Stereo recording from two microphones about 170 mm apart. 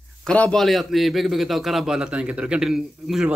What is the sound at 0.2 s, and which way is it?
A man's voice, 5° left (ahead or behind).